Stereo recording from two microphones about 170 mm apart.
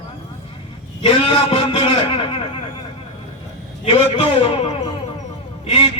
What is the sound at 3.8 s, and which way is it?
Speech, 40° left (ahead or behind).